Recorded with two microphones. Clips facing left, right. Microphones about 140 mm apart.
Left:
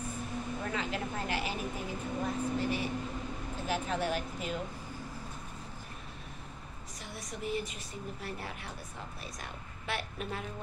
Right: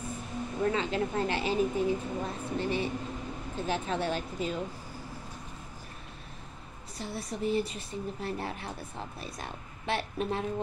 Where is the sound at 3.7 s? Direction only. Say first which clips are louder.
Right 1 dB; 30° right (ahead or behind).